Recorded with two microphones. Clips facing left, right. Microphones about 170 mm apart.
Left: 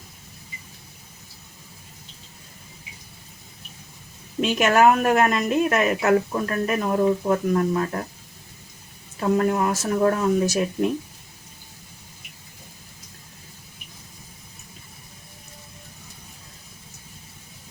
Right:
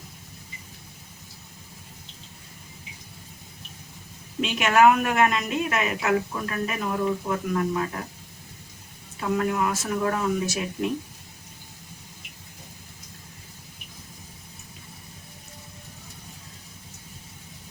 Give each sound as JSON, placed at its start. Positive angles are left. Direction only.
{"t": 4.4, "sound": "a woman's voice", "side_deg": 45}
{"t": 9.3, "sound": "speech", "side_deg": 40}